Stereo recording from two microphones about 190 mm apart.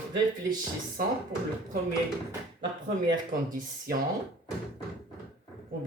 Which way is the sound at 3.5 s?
50° right (ahead or behind).